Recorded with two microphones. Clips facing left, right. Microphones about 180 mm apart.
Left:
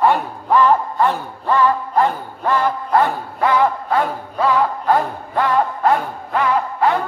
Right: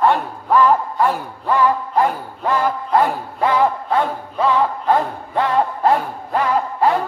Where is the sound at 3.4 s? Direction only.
25° right (ahead or behind).